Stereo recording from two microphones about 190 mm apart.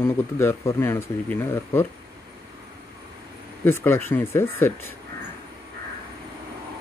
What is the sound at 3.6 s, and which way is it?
Speech, 10° left (ahead or behind).